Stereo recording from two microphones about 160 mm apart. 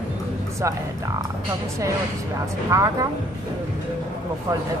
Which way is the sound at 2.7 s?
20° right (ahead or behind).